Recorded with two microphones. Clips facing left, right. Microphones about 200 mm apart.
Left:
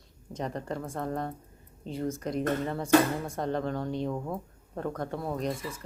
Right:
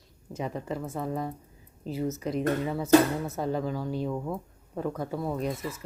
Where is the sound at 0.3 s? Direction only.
5° right (ahead or behind).